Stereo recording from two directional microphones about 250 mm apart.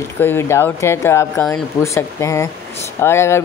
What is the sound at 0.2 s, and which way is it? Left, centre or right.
A woman's voice, centre.